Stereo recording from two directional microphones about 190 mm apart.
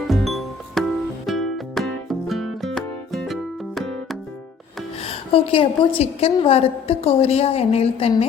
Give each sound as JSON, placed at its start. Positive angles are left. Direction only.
{"t": 0.1, "sound": "music", "side_deg": 0}
{"t": 5.0, "sound": "a woman's voice", "side_deg": 30}